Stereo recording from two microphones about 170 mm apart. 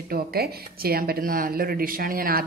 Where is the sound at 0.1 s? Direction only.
65° right (ahead or behind).